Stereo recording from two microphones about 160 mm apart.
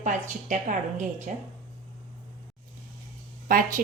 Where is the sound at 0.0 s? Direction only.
50° right (ahead or behind).